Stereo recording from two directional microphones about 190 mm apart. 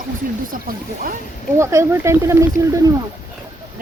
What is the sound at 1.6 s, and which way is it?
Speech, 15° right (ahead or behind).